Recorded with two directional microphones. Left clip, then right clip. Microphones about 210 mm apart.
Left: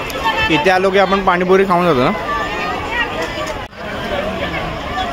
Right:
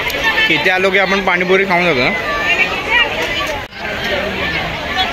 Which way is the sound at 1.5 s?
25° left (ahead or behind).